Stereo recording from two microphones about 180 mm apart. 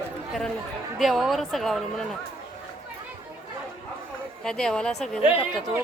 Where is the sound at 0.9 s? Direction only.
Centre (ahead or behind).